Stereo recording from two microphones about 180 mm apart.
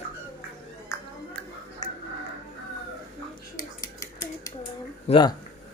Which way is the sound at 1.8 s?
20° left (ahead or behind).